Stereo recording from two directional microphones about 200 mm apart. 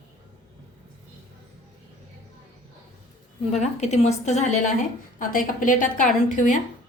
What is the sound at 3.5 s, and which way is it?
A woman's voice, 35° left (ahead or behind).